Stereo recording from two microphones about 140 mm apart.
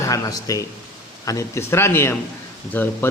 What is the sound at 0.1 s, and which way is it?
A man's voice, 25° left (ahead or behind).